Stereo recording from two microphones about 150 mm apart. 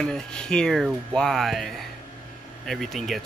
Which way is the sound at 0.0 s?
5° left (ahead or behind).